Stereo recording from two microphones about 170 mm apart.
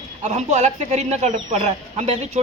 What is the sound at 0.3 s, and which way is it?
A man's voice, 45° right (ahead or behind).